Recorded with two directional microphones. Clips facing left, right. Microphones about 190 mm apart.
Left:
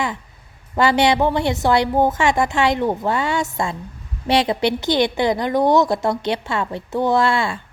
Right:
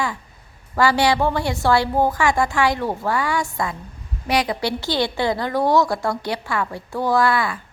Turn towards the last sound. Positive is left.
turn(degrees=25)  # may be behind; listen again after turning